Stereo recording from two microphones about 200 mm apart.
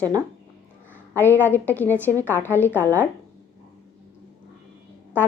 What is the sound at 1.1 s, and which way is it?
A woman's voice, 10° left (ahead or behind).